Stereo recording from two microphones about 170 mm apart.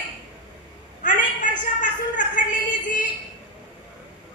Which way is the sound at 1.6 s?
50° left (ahead or behind).